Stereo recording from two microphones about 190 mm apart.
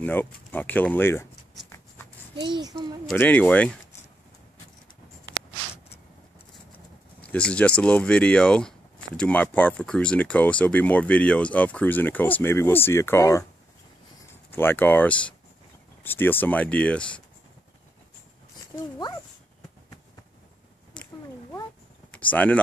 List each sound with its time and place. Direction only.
0.0 s speech: 10° left (ahead or behind)
2.4 s a child's voice: 20° right (ahead or behind)
3.1 s speech: 10° left (ahead or behind)
7.2 s speech: 5° left (ahead or behind)
20.9 s a sound: 5° left (ahead or behind)
22.3 s speech: 10° left (ahead or behind)